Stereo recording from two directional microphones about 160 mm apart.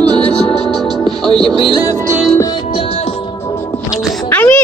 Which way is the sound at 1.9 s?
20° right (ahead or behind).